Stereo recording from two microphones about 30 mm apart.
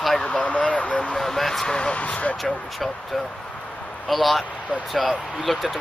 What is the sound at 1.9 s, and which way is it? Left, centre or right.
Speech, left.